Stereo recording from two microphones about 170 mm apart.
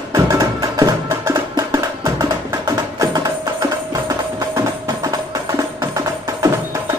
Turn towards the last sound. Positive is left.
turn(degrees=-20)  # may be behind; listen again after turning